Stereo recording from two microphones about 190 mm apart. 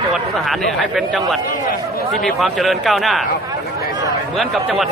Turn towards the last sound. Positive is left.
turn(degrees=0)  # may be behind; listen again after turning